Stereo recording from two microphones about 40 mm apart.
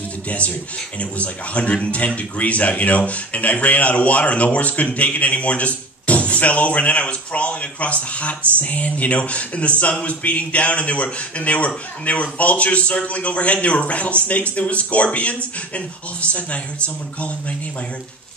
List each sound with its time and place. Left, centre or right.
0.9 s speech: left